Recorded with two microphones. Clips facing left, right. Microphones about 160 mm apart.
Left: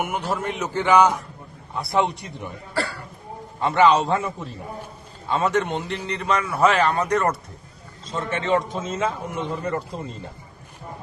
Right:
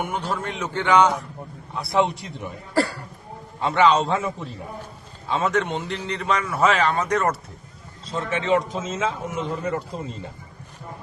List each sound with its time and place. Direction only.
0.0 s a man's voice: 5° left (ahead or behind)
2.7 s cough: 40° right (ahead or behind)
3.6 s a man's voice: centre (ahead or behind)